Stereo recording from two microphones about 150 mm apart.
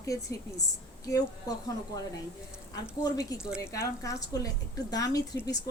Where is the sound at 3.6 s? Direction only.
20° left (ahead or behind).